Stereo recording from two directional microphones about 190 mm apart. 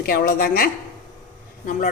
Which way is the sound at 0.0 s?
50° left (ahead or behind).